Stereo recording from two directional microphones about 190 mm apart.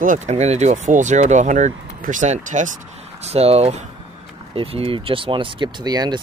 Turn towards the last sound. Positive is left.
turn(degrees=-20)  # may be behind; listen again after turning